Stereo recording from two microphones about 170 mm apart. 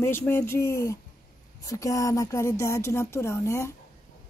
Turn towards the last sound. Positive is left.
turn(degrees=15)  # may be behind; listen again after turning